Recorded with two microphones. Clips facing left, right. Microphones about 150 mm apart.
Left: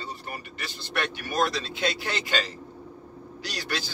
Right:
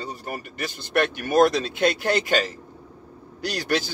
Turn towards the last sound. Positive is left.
turn(degrees=-50)  # may be behind; listen again after turning